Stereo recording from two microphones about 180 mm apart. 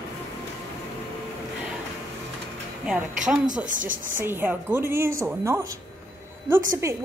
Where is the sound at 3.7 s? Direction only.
45° right (ahead or behind).